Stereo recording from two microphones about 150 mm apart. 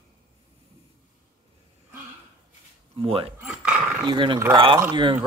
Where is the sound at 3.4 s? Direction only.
5° right (ahead or behind).